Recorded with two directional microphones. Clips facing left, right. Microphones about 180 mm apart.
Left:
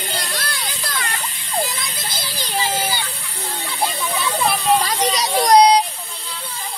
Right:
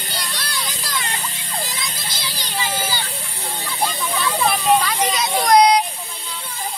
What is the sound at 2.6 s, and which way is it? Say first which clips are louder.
Children playing: left 2 dB; 25° left (ahead or behind).